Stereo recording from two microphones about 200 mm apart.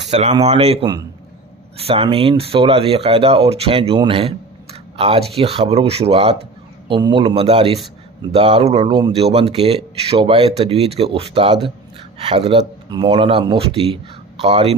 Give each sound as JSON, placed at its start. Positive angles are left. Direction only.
{"t": 0.0, "sound": "speech", "side_deg": -35}